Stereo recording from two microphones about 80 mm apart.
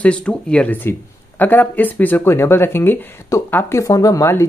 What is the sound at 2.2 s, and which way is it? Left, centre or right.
Speech, left.